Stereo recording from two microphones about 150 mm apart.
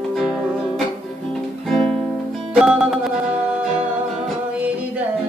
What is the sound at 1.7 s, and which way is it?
Music, 5° left (ahead or behind).